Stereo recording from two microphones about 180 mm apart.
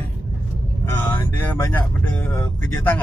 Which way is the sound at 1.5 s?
10° left (ahead or behind).